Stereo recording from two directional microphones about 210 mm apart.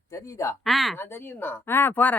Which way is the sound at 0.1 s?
15° left (ahead or behind).